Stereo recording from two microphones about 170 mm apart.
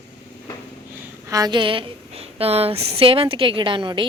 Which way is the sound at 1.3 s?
20° right (ahead or behind).